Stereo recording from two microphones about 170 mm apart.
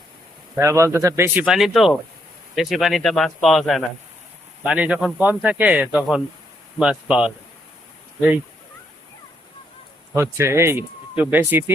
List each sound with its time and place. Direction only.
0.5 s speech: 15° right (ahead or behind)
10.2 s speech: 15° right (ahead or behind)